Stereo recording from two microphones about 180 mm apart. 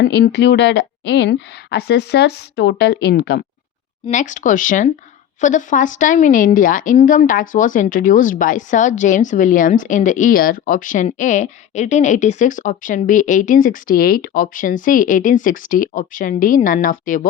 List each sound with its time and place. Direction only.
0.0 s a woman's voice: 70° left (ahead or behind)
4.0 s a woman's voice: 45° left (ahead or behind)